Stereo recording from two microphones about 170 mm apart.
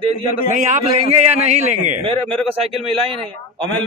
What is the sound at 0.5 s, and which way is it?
Speech, 45° right (ahead or behind).